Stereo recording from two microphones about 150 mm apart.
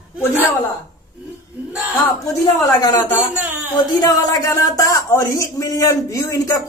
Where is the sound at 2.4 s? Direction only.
25° left (ahead or behind).